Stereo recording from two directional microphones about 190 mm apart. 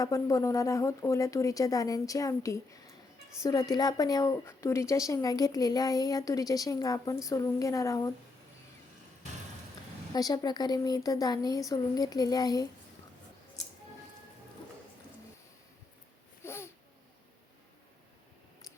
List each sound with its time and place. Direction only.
0.0 s a woman's voice: 15° left (ahead or behind)
10.1 s a woman's voice: 20° left (ahead or behind)
16.4 s babbling: 15° left (ahead or behind)